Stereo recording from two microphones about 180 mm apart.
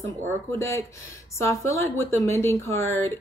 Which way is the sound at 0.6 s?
15° left (ahead or behind).